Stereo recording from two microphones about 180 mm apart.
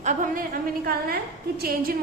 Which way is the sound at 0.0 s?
45° right (ahead or behind).